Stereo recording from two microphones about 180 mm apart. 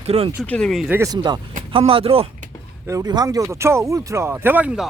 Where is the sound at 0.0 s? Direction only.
35° right (ahead or behind).